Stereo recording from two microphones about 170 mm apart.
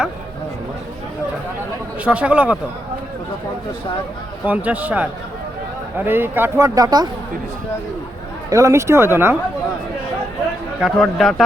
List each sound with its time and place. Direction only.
2.0 s speech: 5° right (ahead or behind)
4.4 s speech: 10° right (ahead or behind)
6.1 s speech: 10° right (ahead or behind)
8.4 s speech: 20° right (ahead or behind)
10.8 s a man's voice: 5° right (ahead or behind)